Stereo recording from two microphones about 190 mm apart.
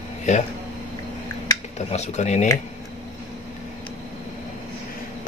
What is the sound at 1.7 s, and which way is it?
Speech, 35° left (ahead or behind).